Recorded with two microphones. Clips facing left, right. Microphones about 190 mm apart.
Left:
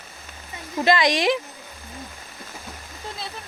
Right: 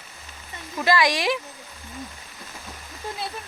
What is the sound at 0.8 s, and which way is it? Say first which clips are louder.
Speech: left 2 dB; 20° left (ahead or behind).